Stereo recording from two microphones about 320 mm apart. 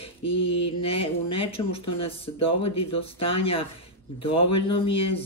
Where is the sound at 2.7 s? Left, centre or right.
Centre.